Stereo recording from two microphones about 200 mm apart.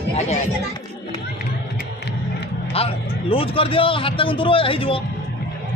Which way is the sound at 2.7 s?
30° left (ahead or behind).